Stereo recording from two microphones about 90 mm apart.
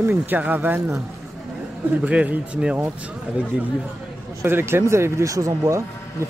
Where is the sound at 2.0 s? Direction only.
15° right (ahead or behind).